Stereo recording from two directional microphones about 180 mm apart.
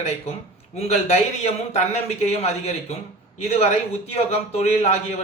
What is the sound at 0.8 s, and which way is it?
A man's voice, 40° left (ahead or behind).